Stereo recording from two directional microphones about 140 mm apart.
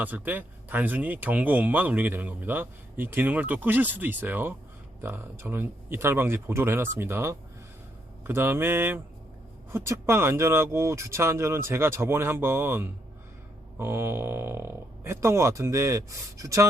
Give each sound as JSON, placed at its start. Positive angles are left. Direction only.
{"t": 0.0, "sound": "speech", "side_deg": -10}